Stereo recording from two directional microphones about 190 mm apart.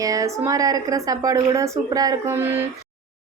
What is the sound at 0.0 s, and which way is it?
A woman's voice, 20° right (ahead or behind).